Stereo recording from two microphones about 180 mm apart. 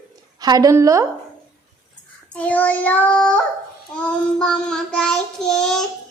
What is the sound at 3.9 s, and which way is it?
A child's voice, 5° left (ahead or behind).